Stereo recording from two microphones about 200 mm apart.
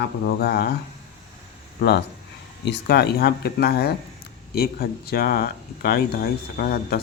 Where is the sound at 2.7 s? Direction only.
55° left (ahead or behind).